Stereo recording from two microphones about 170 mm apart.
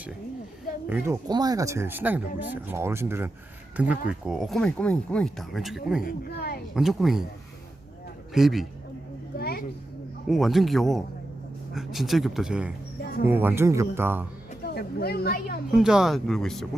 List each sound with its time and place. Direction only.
0.9 s speech: 15° right (ahead or behind)
6.0 s speech: 60° left (ahead or behind)
6.7 s speech: centre (ahead or behind)
8.3 s a man's voice: centre (ahead or behind)
9.4 s speech: 65° left (ahead or behind)
10.2 s speech: centre (ahead or behind)
13.0 s a sound: 65° left (ahead or behind)
13.2 s speech: 10° right (ahead or behind)
14.6 s speech: 70° left (ahead or behind)
15.7 s speech: 5° right (ahead or behind)